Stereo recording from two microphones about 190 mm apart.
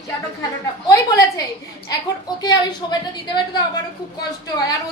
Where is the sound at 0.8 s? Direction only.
15° left (ahead or behind).